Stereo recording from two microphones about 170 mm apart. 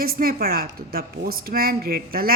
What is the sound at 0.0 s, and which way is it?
Speech, 60° right (ahead or behind).